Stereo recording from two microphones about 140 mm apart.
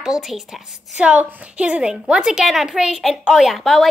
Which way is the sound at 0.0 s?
5° right (ahead or behind).